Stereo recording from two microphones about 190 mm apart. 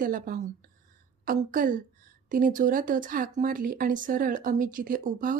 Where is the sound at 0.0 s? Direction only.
45° right (ahead or behind).